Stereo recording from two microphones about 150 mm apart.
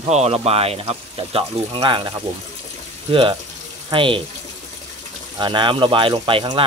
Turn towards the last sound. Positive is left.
turn(degrees=-35)  # may be behind; listen again after turning